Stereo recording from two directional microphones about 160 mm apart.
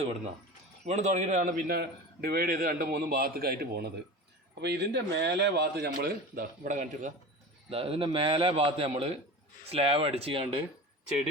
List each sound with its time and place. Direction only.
0.9 s a man's voice: 45° right (ahead or behind)
7.7 s a man's voice: 35° right (ahead or behind)